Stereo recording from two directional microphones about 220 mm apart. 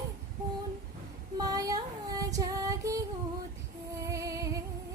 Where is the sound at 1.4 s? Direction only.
15° right (ahead or behind).